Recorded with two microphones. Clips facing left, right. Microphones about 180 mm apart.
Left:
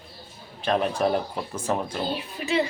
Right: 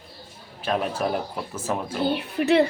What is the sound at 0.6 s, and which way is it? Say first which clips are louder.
A man's voice: left 2 dB; 5° right (ahead or behind).